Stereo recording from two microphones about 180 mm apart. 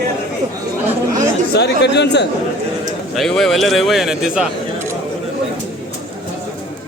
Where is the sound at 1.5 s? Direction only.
70° left (ahead or behind).